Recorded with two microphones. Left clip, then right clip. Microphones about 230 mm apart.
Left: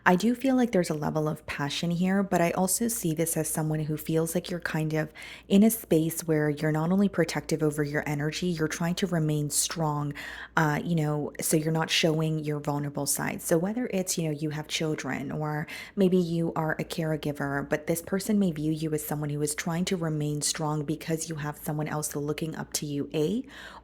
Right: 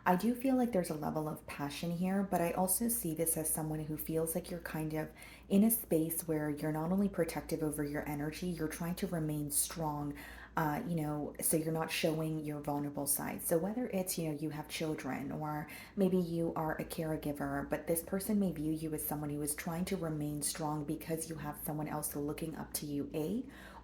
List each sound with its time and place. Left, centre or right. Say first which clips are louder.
0.0 s a woman's voice: left 8 dB; left